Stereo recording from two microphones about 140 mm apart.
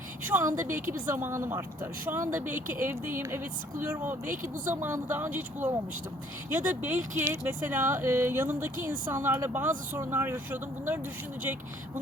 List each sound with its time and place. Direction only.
0.3 s a woman's voice: 20° right (ahead or behind)